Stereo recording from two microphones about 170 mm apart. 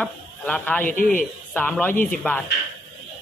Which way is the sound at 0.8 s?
55° left (ahead or behind).